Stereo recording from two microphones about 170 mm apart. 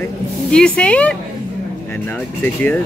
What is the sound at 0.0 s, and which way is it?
A woman's voice, 5° left (ahead or behind).